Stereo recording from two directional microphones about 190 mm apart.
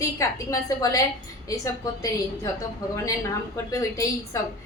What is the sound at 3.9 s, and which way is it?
Speech, 15° left (ahead or behind).